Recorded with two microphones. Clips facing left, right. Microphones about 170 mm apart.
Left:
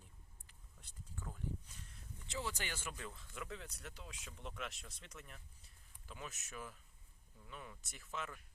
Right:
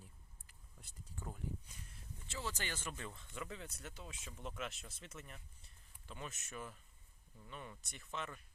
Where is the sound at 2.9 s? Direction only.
Centre (ahead or behind).